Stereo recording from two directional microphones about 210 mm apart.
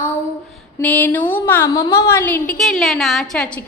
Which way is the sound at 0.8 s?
10° left (ahead or behind).